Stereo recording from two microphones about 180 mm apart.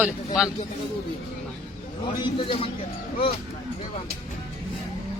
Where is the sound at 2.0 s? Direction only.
25° left (ahead or behind).